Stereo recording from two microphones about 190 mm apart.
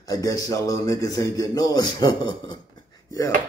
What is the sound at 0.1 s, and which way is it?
A man's voice, 20° left (ahead or behind).